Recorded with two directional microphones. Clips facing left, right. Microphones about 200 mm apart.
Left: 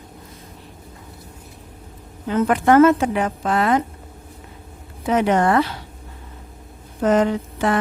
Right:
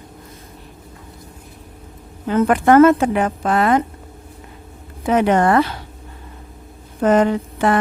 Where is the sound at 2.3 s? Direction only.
55° right (ahead or behind).